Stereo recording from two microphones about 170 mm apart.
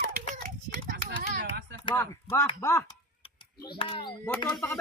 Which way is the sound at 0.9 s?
60° right (ahead or behind).